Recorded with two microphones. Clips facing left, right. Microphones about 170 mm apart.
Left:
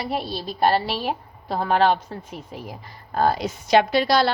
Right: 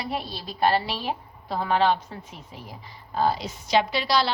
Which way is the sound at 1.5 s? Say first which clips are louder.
Left 3 dB; 45° left (ahead or behind).